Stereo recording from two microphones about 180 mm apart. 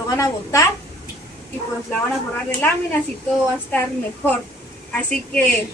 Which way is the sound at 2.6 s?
10° left (ahead or behind).